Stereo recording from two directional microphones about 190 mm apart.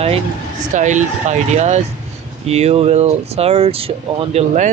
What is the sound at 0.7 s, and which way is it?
Speech, 40° right (ahead or behind).